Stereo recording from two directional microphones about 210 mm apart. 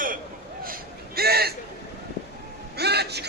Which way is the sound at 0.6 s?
45° right (ahead or behind).